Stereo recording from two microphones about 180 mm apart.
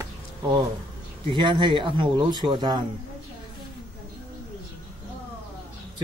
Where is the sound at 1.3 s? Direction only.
25° right (ahead or behind).